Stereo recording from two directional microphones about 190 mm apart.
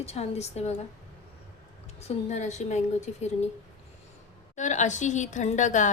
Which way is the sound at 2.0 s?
40° left (ahead or behind).